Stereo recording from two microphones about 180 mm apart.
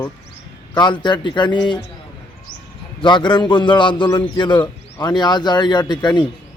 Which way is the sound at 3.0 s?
25° left (ahead or behind).